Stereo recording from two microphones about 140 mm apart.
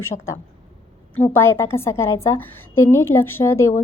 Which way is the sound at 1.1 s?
15° left (ahead or behind).